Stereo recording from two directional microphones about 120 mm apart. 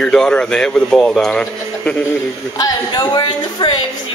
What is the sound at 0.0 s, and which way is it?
A man's voice, 5° left (ahead or behind).